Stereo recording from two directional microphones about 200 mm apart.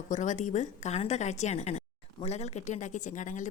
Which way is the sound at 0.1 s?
35° left (ahead or behind).